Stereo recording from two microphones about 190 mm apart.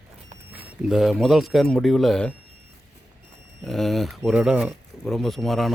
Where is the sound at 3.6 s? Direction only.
Centre (ahead or behind).